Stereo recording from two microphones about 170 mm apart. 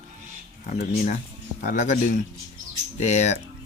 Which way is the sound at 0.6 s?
50° left (ahead or behind).